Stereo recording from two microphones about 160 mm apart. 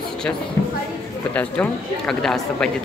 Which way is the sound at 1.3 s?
10° left (ahead or behind).